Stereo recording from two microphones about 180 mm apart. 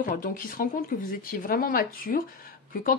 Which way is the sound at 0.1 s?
50° left (ahead or behind).